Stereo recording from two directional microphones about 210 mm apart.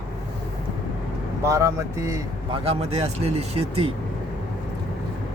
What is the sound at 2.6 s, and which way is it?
Speech, 30° right (ahead or behind).